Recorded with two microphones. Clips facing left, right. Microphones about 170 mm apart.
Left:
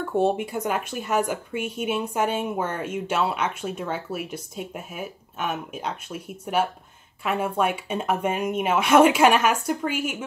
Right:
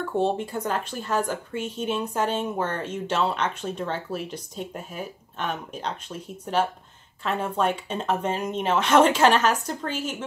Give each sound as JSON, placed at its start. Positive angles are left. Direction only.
{"t": 0.1, "sound": "speech", "side_deg": 10}